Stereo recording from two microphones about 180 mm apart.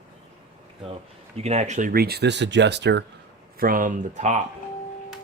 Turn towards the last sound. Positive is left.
turn(degrees=-40)  # may be behind; listen again after turning